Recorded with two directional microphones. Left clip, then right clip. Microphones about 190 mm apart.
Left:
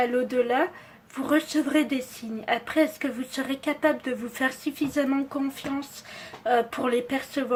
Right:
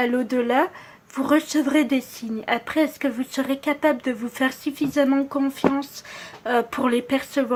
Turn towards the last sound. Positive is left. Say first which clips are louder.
# right 4 dB
turn(degrees=-25)  # may be behind; listen again after turning